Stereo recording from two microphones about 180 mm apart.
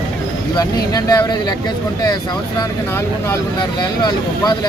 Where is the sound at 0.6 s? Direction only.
20° left (ahead or behind).